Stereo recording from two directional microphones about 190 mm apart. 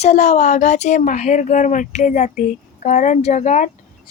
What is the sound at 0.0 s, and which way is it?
Speech, 40° left (ahead or behind).